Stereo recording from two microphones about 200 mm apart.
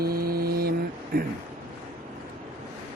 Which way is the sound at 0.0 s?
50° right (ahead or behind).